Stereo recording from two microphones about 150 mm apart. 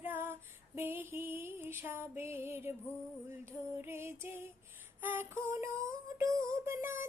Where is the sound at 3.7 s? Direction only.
15° right (ahead or behind).